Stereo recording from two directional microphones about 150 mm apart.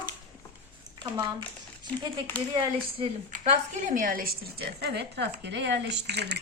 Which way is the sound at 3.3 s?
60° right (ahead or behind).